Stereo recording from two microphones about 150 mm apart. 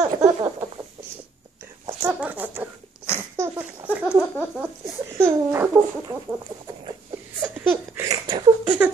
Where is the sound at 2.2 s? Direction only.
10° right (ahead or behind).